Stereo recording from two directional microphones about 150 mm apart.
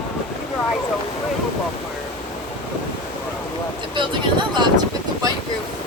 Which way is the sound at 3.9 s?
30° right (ahead or behind).